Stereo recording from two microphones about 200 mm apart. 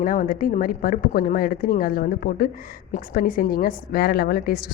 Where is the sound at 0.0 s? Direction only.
45° left (ahead or behind).